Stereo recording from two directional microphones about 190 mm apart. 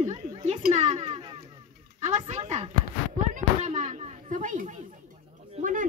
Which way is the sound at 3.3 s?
35° right (ahead or behind).